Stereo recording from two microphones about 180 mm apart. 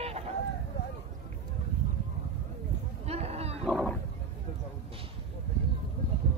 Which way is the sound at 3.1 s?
35° right (ahead or behind).